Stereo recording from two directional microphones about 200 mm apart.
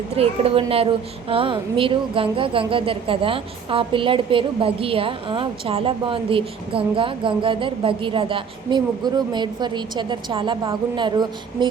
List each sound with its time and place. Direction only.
0.2 s speech: 30° right (ahead or behind)